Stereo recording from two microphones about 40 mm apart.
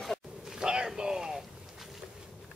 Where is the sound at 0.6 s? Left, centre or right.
Centre.